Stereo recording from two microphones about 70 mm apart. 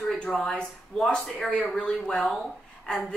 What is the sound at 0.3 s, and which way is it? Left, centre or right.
Speech, centre.